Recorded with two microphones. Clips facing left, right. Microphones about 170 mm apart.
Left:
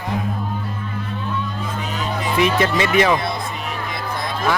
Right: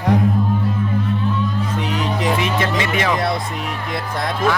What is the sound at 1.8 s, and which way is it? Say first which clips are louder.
Music: right 4 dB; 90° right.